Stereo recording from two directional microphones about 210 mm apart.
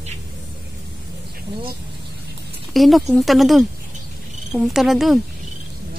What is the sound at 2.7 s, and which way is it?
A woman's voice, centre (ahead or behind).